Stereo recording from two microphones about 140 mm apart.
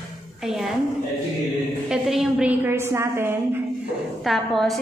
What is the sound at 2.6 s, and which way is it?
Speech, 20° right (ahead or behind).